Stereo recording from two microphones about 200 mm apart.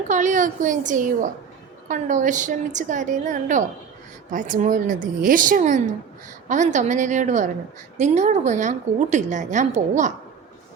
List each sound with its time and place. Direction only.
0.1 s a woman's voice: 40° right (ahead or behind)